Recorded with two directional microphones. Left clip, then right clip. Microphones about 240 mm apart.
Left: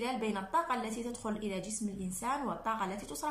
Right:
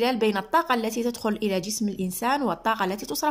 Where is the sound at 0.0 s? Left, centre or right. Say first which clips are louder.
Right 12 dB; right.